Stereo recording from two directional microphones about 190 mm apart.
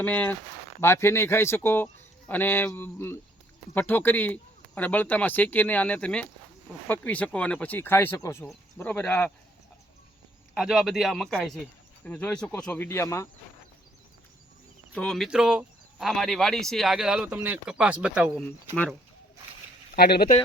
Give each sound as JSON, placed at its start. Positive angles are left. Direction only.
{"t": 0.0, "sound": "speech", "side_deg": 10}
{"t": 10.5, "sound": "speech", "side_deg": 0}
{"t": 14.9, "sound": "speech", "side_deg": 5}
{"t": 20.0, "sound": "speech", "side_deg": 55}